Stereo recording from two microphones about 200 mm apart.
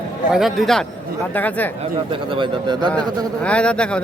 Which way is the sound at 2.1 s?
25° right (ahead or behind).